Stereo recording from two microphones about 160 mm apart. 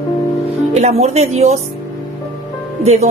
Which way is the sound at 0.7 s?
45° right (ahead or behind).